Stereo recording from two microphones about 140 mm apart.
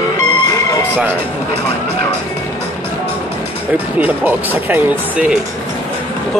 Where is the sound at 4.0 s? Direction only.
15° right (ahead or behind).